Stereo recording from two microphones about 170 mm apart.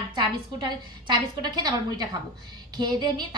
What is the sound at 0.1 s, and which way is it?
A woman's voice, 25° right (ahead or behind).